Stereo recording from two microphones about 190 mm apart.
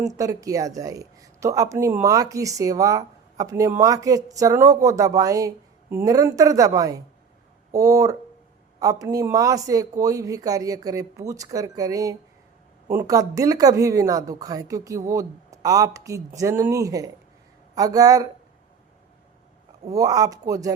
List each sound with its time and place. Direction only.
0.1 s speech: 15° right (ahead or behind)
19.9 s speech: 20° right (ahead or behind)